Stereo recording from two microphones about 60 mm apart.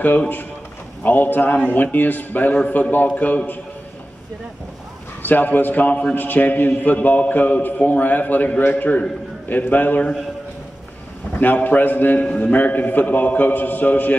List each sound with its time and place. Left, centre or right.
1.0 s a man's voice: left
5.2 s a man's voice: left
11.3 s a man's voice: left